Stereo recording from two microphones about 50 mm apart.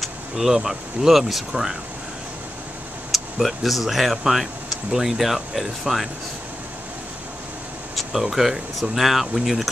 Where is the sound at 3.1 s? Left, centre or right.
Centre.